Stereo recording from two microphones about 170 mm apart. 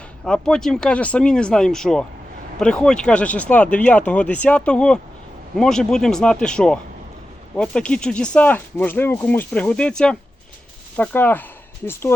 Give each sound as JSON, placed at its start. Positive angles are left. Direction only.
{"t": 0.3, "sound": "speech", "side_deg": 5}